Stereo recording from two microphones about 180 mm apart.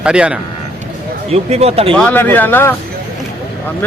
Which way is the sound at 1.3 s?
35° right (ahead or behind).